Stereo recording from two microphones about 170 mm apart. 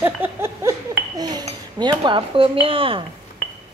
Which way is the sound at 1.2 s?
25° right (ahead or behind).